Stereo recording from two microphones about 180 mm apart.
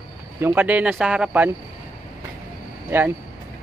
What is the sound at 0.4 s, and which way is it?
Speech, 10° right (ahead or behind).